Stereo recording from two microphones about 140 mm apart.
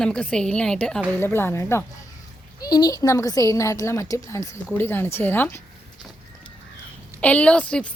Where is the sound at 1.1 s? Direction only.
15° left (ahead or behind).